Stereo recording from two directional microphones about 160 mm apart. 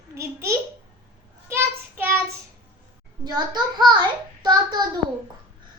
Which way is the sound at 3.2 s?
25° right (ahead or behind).